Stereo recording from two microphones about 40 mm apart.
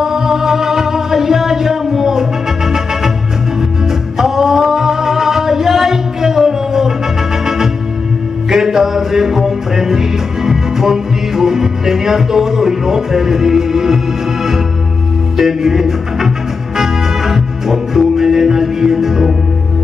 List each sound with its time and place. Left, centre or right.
0.0 s music: centre
4.2 s music: centre
15.3 s music: centre